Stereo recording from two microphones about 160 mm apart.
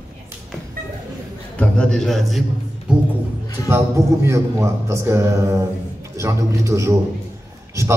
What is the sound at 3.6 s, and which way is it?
A man's voice, 15° right (ahead or behind).